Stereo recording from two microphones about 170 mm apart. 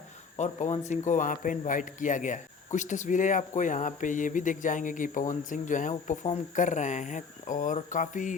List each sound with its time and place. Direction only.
0.3 s speech: 40° left (ahead or behind)